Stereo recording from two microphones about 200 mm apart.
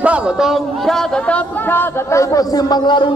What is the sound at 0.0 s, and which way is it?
Speech, 5° right (ahead or behind).